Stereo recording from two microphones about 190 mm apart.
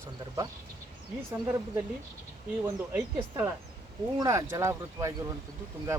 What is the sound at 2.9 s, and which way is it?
Speech, 10° right (ahead or behind).